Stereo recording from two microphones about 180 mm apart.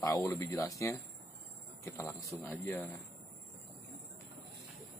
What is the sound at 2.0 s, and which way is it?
Speech, 15° left (ahead or behind).